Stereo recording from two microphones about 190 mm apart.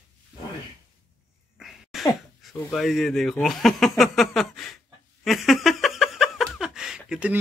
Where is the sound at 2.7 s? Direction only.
Centre (ahead or behind).